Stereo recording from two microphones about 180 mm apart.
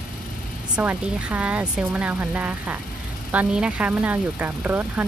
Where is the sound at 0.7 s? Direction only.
10° right (ahead or behind).